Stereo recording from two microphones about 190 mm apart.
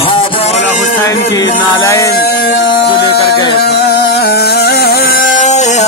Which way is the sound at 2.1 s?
55° left (ahead or behind).